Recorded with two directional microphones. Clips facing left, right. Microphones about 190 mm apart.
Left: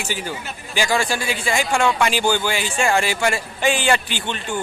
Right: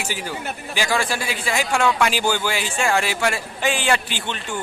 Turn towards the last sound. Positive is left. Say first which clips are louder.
# left 1 dB
turn(degrees=0)  # may be behind; listen again after turning